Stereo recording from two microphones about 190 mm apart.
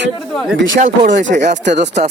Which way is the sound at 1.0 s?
40° right (ahead or behind).